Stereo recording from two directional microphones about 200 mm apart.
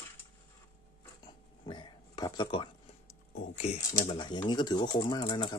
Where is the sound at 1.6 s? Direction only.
25° left (ahead or behind).